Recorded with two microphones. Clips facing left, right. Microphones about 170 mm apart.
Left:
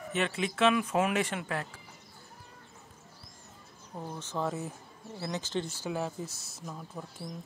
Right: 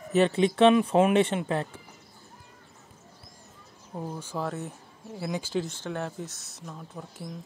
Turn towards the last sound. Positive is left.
turn(degrees=0)  # may be behind; listen again after turning